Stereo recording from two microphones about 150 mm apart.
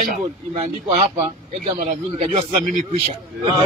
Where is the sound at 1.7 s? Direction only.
50° right (ahead or behind).